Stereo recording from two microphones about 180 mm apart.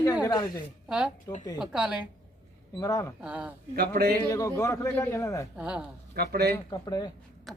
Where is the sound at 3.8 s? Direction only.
60° right (ahead or behind).